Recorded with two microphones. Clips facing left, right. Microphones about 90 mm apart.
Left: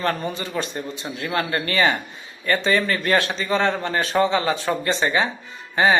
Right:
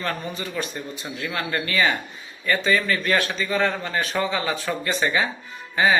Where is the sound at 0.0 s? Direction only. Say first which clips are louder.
Left 4 dB; 35° left (ahead or behind).